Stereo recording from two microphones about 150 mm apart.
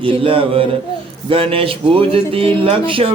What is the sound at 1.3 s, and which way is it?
Speech, 40° right (ahead or behind).